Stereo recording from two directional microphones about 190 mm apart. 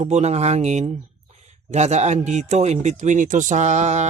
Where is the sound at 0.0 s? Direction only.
35° right (ahead or behind).